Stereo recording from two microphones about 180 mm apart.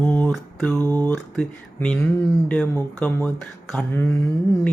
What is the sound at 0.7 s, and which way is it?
Speech, 20° right (ahead or behind).